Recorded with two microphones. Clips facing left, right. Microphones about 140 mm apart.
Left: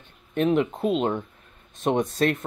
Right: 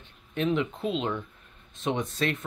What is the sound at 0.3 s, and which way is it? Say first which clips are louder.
Speech: left 5 dB; 45° left (ahead or behind).